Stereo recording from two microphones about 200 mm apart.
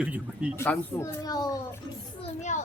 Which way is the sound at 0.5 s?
10° left (ahead or behind).